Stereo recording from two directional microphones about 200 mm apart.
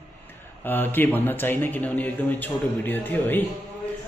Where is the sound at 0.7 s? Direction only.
10° left (ahead or behind).